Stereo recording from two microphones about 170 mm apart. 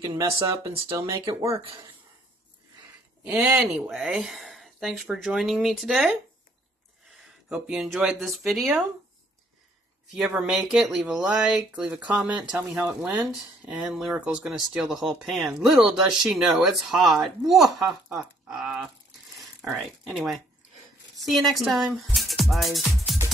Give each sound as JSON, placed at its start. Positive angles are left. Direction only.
{"t": 0.0, "sound": "speech", "side_deg": -30}
{"t": 0.5, "sound": "speech", "side_deg": -20}
{"t": 3.3, "sound": "speech", "side_deg": -5}
{"t": 7.4, "sound": "speech", "side_deg": -5}
{"t": 10.1, "sound": "speech", "side_deg": 0}